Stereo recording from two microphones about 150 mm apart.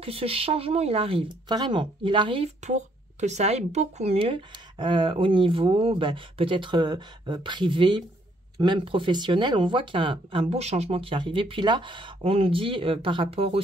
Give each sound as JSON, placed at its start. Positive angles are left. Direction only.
{"t": 0.0, "sound": "speech", "side_deg": -40}